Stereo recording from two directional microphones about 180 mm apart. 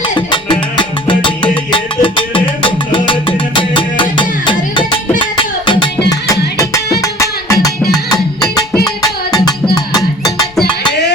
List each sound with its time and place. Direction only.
0.3 s music: 25° left (ahead or behind)
5.2 s music: 30° left (ahead or behind)
6.1 s music: 20° left (ahead or behind)